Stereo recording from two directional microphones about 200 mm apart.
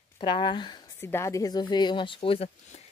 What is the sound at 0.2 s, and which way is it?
A woman's voice, 25° left (ahead or behind).